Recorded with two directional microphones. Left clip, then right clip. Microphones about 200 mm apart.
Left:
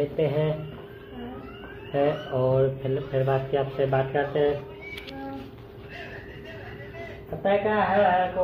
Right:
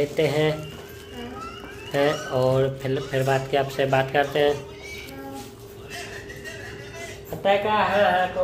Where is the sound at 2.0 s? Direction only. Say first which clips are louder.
Right 2 dB; 15° right (ahead or behind).